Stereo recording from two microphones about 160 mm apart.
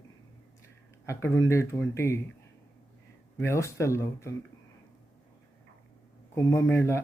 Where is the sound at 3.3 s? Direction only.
15° left (ahead or behind).